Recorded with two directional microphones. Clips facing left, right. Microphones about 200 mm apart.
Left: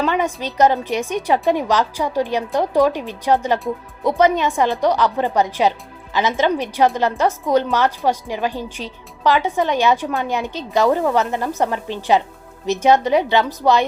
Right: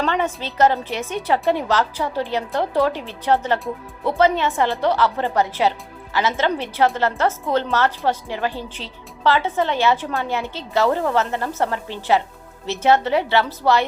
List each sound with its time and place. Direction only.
0.0 s a woman's voice: 15° left (ahead or behind)